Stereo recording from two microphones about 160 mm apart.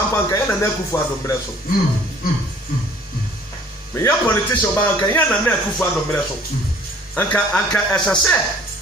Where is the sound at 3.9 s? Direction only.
15° left (ahead or behind).